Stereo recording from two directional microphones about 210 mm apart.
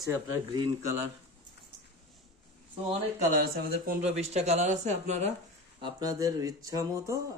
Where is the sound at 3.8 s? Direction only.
30° right (ahead or behind).